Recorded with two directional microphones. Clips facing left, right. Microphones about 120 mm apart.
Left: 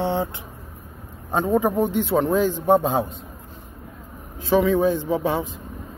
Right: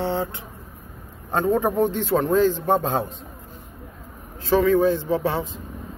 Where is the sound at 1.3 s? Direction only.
10° left (ahead or behind).